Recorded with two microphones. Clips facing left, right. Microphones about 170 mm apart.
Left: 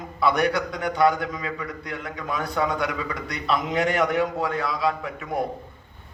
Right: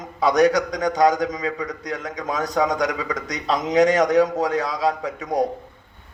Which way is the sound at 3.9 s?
40° right (ahead or behind).